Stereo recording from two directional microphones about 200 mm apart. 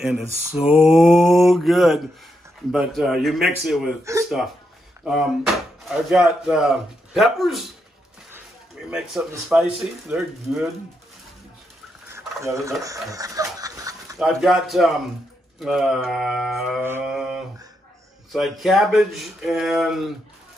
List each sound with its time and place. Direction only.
0.0 s speech: 5° right (ahead or behind)
5.0 s speech: centre (ahead or behind)
9.3 s speech: 5° right (ahead or behind)
12.1 s a sound: 15° right (ahead or behind)
14.1 s speech: centre (ahead or behind)
16.8 s mantra: 5° right (ahead or behind)
18.3 s speech: centre (ahead or behind)